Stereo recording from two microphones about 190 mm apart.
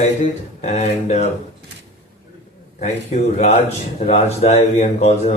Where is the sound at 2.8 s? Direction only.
35° left (ahead or behind).